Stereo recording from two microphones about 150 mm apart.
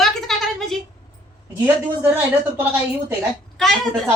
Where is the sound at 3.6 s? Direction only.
Centre (ahead or behind).